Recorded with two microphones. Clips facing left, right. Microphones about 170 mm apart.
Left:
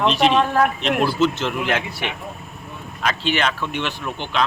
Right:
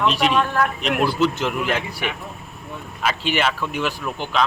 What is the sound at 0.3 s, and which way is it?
Speech, 30° left (ahead or behind).